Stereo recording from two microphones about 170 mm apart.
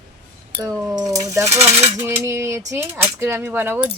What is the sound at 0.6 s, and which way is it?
A woman's voice, 20° right (ahead or behind).